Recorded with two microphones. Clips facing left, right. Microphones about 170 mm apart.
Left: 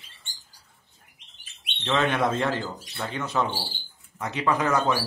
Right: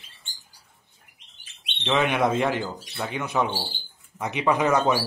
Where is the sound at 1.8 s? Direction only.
15° right (ahead or behind).